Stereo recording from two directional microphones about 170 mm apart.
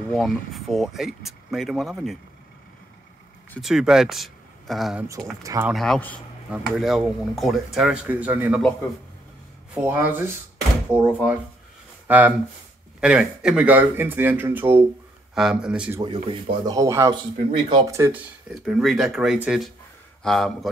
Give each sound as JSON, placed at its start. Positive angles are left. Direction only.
{"t": 0.1, "sound": "speech", "side_deg": 0}
{"t": 3.5, "sound": "speech", "side_deg": 0}
{"t": 5.0, "sound": "speech", "side_deg": -20}
{"t": 5.7, "sound": "speech", "side_deg": 0}
{"t": 9.8, "sound": "speech", "side_deg": -10}
{"t": 16.0, "sound": "speech", "side_deg": -25}
{"t": 18.5, "sound": "speech", "side_deg": 0}